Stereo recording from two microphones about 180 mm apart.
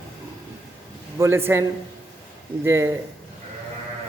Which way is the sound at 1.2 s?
15° right (ahead or behind).